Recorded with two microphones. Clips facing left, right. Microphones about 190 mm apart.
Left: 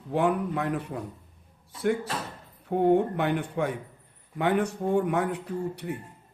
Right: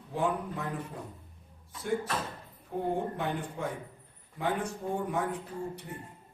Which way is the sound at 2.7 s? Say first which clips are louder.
Left 10 dB; 70° left (ahead or behind).